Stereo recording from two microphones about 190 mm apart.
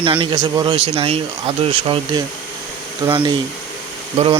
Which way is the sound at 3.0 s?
25° right (ahead or behind).